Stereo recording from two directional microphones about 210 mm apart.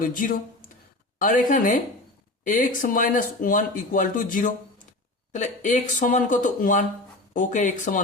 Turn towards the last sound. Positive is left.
turn(degrees=35)  # may be behind; listen again after turning